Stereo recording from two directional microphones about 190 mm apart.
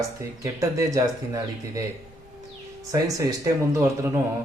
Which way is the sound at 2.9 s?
20° right (ahead or behind).